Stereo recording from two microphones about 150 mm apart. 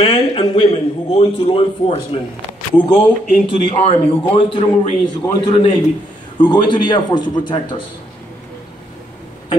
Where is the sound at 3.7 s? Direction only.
40° left (ahead or behind).